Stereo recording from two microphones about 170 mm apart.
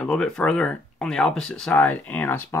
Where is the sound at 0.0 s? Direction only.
5° left (ahead or behind).